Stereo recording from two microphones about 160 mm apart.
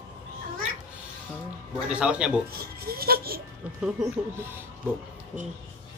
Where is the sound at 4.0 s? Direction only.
15° right (ahead or behind).